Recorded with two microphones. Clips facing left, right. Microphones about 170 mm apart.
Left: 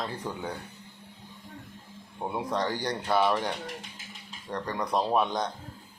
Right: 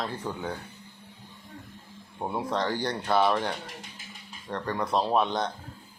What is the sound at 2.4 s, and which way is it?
Speech, 15° left (ahead or behind).